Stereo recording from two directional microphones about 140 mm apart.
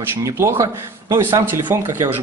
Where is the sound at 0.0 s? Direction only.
20° right (ahead or behind).